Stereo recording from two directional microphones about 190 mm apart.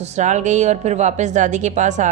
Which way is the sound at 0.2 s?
40° right (ahead or behind).